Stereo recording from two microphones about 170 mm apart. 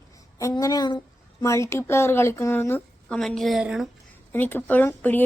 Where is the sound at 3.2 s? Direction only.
Centre (ahead or behind).